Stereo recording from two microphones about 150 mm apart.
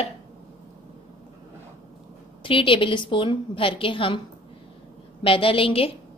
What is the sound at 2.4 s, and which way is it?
A woman's voice, 35° left (ahead or behind).